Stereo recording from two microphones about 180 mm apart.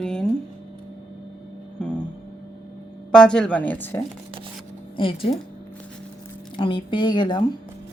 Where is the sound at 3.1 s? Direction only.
5° left (ahead or behind).